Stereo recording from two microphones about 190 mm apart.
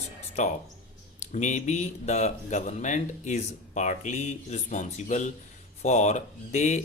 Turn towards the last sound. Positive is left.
turn(degrees=40)  # may be behind; listen again after turning